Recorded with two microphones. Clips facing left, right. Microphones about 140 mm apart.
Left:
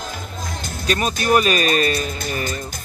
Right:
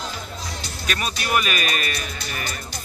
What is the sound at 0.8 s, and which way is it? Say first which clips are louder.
Speech: left 7 dB; 30° left (ahead or behind).